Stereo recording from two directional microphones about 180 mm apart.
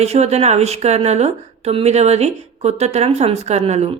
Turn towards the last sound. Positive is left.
turn(degrees=-40)  # may be behind; listen again after turning